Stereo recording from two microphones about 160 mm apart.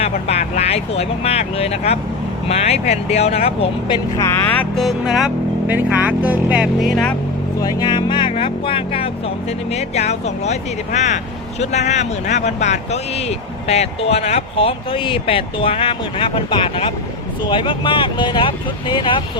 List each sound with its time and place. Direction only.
0.0 s speech: 40° left (ahead or behind)
4.7 s speech: centre (ahead or behind)
7.6 s speech: 25° left (ahead or behind)